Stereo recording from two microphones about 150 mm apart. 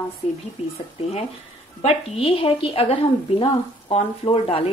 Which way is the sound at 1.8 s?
40° left (ahead or behind).